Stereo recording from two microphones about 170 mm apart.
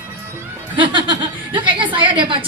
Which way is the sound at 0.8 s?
30° right (ahead or behind).